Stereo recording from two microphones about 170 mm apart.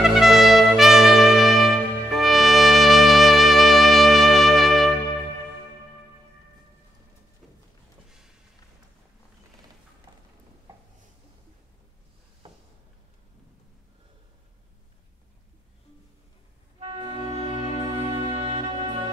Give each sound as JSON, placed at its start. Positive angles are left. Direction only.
{"t": 0.0, "sound": "trumpet", "side_deg": 0}
{"t": 10.1, "sound": "a sound", "side_deg": -20}
{"t": 17.0, "sound": "music", "side_deg": -30}
{"t": 18.5, "sound": "music", "side_deg": -30}